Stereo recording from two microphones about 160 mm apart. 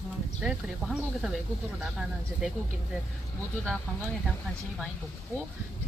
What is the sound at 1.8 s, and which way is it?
Speech, 5° right (ahead or behind).